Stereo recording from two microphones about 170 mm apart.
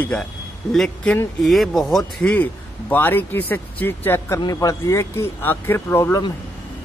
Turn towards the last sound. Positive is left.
turn(degrees=20)  # may be behind; listen again after turning